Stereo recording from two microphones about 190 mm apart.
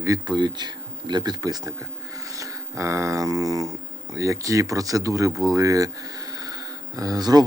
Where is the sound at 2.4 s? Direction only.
15° right (ahead or behind).